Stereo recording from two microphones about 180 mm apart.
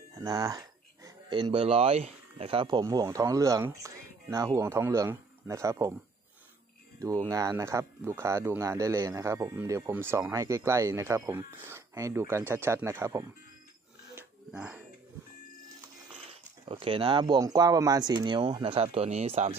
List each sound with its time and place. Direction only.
0.2 s speech: 20° right (ahead or behind)
7.0 s speech: 20° right (ahead or behind)
14.1 s dog: 5° right (ahead or behind)
16.6 s speech: 30° right (ahead or behind)